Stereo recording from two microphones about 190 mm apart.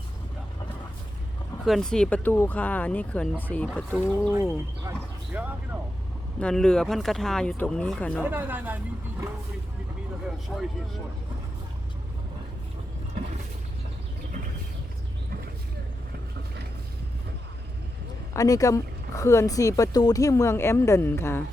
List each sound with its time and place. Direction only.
1.6 s speech: centre (ahead or behind)
4.8 s a sound: 10° right (ahead or behind)
6.4 s speech: 5° left (ahead or behind)
8.2 s speech: 10° right (ahead or behind)
10.5 s speech: centre (ahead or behind)
18.3 s speech: 20° left (ahead or behind)